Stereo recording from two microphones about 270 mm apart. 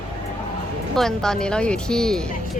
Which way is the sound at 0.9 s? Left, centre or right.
Centre.